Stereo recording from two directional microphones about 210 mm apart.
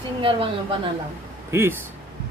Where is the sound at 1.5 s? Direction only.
10° right (ahead or behind).